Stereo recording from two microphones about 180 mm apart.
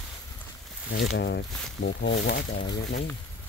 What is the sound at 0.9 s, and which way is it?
Speech, 70° left (ahead or behind).